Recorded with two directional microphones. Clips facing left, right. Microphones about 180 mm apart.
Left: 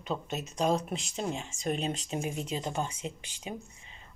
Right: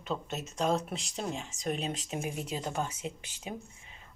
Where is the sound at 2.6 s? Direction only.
15° left (ahead or behind).